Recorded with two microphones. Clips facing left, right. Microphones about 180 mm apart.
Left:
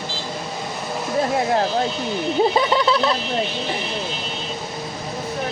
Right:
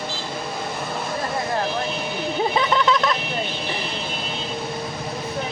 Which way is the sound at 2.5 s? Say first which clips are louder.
Left 2 dB; 35° left (ahead or behind).